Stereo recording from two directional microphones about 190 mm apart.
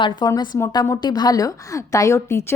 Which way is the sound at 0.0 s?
25° left (ahead or behind).